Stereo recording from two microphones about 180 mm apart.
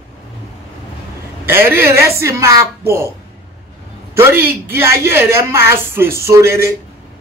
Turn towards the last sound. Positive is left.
turn(degrees=-15)  # may be behind; listen again after turning